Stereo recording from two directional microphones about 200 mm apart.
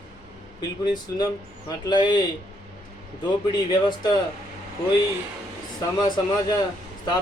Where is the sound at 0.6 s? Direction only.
20° left (ahead or behind).